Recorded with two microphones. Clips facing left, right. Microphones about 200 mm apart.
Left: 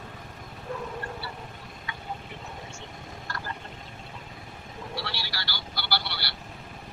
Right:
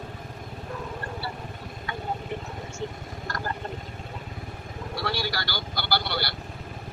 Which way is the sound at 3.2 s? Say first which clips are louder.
Right 5 dB; 45° right (ahead or behind).